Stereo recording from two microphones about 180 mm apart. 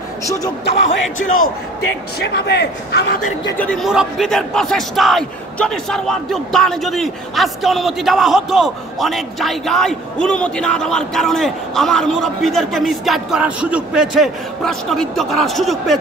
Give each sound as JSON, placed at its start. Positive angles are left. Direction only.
{"t": 2.3, "sound": "a man's voice", "side_deg": 65}
{"t": 3.6, "sound": "a man's voice", "side_deg": 0}